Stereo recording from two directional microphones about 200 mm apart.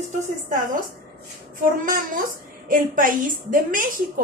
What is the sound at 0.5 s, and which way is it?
A woman's voice, 40° right (ahead or behind).